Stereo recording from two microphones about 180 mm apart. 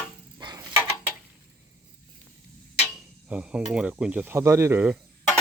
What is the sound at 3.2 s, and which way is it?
Speech, 5° right (ahead or behind).